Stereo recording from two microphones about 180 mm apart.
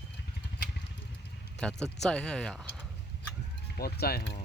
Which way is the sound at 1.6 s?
5° left (ahead or behind).